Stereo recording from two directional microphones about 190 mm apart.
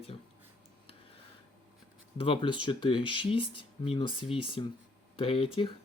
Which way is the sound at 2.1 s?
30° left (ahead or behind).